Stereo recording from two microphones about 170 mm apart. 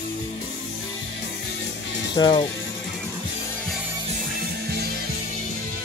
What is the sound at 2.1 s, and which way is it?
Speech, 25° left (ahead or behind).